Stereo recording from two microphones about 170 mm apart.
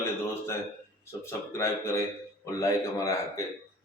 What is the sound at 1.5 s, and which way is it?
Speech, 15° left (ahead or behind).